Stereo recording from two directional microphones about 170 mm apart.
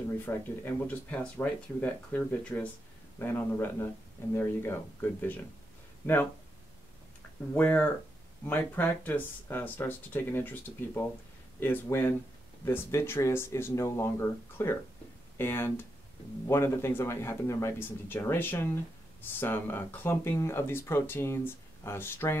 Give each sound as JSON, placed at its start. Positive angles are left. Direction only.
{"t": 0.2, "sound": "speech", "side_deg": 10}
{"t": 7.5, "sound": "speech", "side_deg": 10}